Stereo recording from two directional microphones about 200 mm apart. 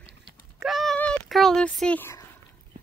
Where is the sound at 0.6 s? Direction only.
Centre (ahead or behind).